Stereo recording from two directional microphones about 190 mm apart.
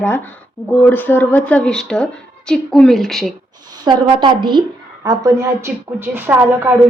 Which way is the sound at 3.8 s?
25° right (ahead or behind).